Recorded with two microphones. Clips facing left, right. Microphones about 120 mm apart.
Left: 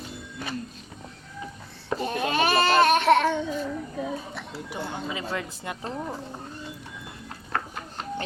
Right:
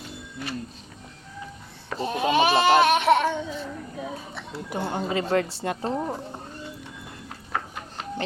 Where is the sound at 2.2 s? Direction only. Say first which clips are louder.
Right 4 dB; 15° right (ahead or behind).